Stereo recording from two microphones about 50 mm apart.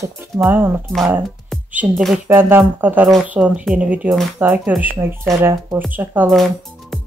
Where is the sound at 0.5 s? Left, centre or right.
Right.